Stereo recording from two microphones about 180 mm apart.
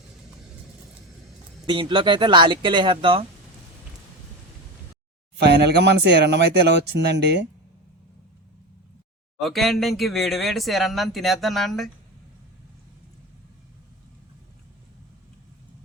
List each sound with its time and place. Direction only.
1.6 s speech: 25° right (ahead or behind)
5.4 s speech: 70° right (ahead or behind)
9.4 s speech: centre (ahead or behind)